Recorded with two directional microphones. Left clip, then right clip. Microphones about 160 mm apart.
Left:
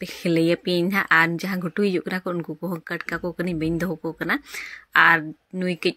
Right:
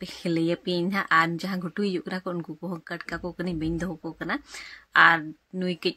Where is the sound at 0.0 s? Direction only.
20° left (ahead or behind).